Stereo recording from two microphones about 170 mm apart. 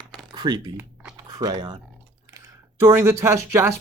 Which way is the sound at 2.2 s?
20° right (ahead or behind).